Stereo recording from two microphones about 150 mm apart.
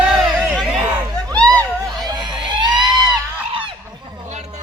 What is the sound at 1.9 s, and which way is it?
Crowd, 25° right (ahead or behind).